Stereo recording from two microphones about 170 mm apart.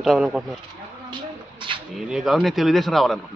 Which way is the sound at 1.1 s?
30° right (ahead or behind).